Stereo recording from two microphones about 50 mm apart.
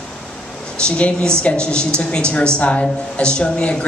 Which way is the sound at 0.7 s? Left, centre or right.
Left.